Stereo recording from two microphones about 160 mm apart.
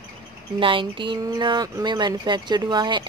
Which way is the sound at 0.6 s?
30° right (ahead or behind).